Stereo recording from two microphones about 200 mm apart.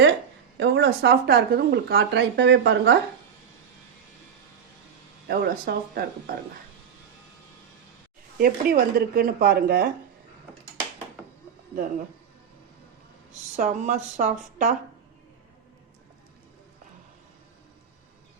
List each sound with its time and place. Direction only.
0.5 s speech: 65° right (ahead or behind)
5.3 s speech: 50° right (ahead or behind)
8.4 s speech: 50° right (ahead or behind)
13.6 s speech: 40° right (ahead or behind)